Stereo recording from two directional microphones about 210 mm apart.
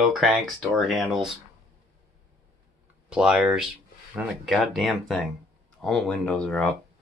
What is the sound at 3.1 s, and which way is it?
Speech, 5° right (ahead or behind).